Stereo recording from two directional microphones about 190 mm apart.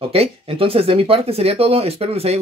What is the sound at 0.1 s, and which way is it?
Speech, 30° right (ahead or behind).